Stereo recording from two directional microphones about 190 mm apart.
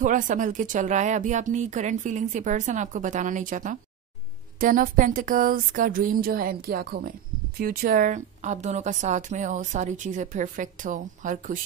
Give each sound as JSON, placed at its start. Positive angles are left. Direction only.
{"t": 0.0, "sound": "a woman's voice", "side_deg": -45}